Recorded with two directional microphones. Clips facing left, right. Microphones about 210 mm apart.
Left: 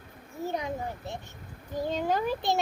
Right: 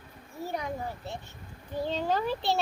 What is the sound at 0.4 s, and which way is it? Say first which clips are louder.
A child's voice: left 2 dB; 20° left (ahead or behind).